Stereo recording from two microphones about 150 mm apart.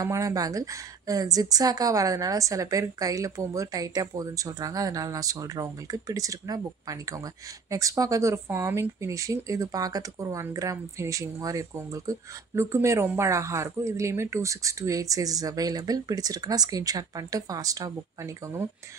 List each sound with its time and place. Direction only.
0.0 s speech: 25° right (ahead or behind)